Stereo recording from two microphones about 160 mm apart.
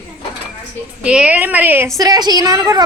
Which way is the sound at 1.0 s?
5° right (ahead or behind).